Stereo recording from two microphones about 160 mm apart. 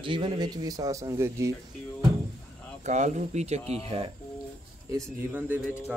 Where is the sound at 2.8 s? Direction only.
45° right (ahead or behind).